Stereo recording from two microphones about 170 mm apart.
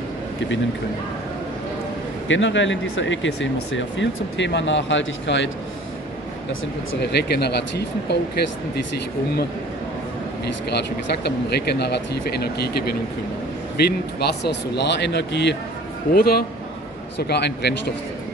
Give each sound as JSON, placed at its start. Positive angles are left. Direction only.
{"t": 2.2, "sound": "speech", "side_deg": 90}
{"t": 7.0, "sound": "speech", "side_deg": 80}
{"t": 10.4, "sound": "speech", "side_deg": 75}
{"t": 16.1, "sound": "a man's voice", "side_deg": 60}
{"t": 17.2, "sound": "speech", "side_deg": 75}